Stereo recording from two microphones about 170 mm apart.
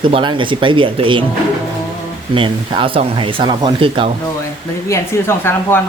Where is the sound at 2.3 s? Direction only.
30° right (ahead or behind).